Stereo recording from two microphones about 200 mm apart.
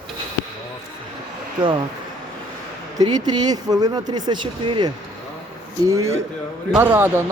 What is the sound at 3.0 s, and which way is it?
Speech, 20° right (ahead or behind).